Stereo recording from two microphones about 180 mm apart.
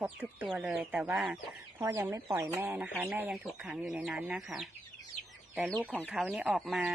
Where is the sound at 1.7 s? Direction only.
15° right (ahead or behind).